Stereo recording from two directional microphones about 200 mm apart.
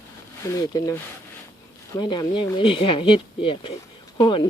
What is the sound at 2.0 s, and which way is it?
Speech, 20° left (ahead or behind).